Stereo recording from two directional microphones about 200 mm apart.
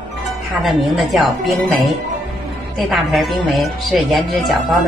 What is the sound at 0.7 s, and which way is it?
Speech, centre (ahead or behind).